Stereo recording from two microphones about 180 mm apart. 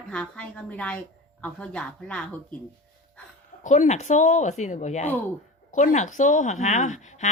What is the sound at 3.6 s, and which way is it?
A woman's voice, 40° left (ahead or behind).